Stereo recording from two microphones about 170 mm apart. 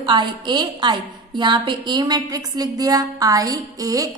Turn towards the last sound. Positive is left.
turn(degrees=-20)  # may be behind; listen again after turning